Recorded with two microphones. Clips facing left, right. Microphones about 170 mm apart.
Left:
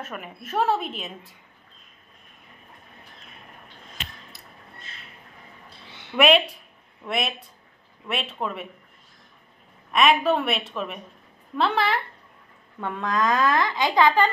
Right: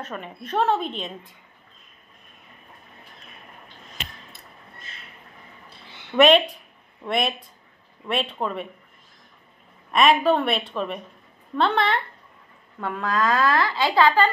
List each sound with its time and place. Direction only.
0.4 s a woman's voice: 5° left (ahead or behind)
6.1 s a woman's voice: 5° left (ahead or behind)
9.9 s a woman's voice: centre (ahead or behind)
12.8 s a woman's voice: 20° left (ahead or behind)